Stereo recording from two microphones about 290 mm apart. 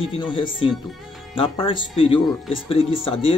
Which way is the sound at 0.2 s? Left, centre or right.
Centre.